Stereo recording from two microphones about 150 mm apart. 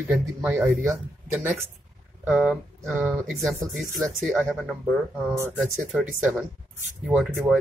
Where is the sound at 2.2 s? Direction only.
5° right (ahead or behind).